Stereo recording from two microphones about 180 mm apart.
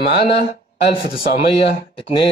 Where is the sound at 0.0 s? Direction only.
65° left (ahead or behind).